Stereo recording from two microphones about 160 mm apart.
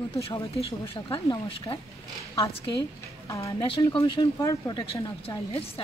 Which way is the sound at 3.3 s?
20° left (ahead or behind).